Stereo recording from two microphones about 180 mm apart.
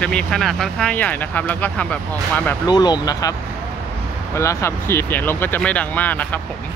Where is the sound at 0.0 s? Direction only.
5° left (ahead or behind).